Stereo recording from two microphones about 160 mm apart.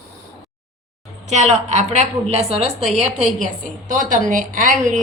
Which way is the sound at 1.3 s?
45° right (ahead or behind).